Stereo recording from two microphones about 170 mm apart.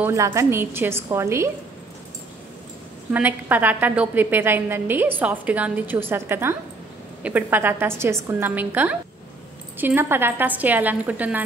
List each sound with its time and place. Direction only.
0.0 s a woman's voice: 15° right (ahead or behind)
3.1 s a woman's voice: 10° right (ahead or behind)